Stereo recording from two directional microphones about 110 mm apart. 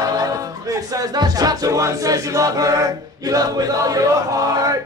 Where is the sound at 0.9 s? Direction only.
35° right (ahead or behind).